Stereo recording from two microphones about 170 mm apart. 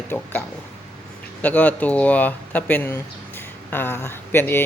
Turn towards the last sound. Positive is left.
turn(degrees=10)  # may be behind; listen again after turning